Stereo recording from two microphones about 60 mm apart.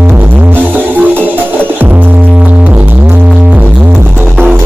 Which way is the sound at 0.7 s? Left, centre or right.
Right.